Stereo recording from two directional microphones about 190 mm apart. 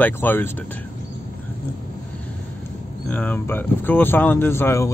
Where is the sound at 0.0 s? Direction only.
10° left (ahead or behind).